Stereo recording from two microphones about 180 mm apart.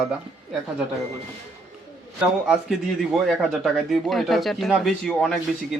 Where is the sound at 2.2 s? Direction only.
5° right (ahead or behind).